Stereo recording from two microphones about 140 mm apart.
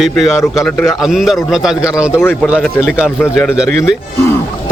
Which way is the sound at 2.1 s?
20° left (ahead or behind).